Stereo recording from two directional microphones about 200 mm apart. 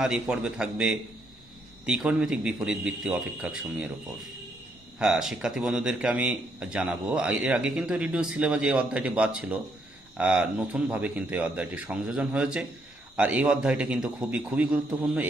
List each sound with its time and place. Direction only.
0.0 s a man's voice: 5° right (ahead or behind)
4.9 s a man's voice: 5° right (ahead or behind)